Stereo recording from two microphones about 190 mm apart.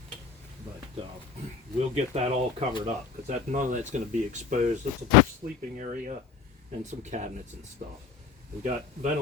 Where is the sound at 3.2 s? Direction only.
40° right (ahead or behind).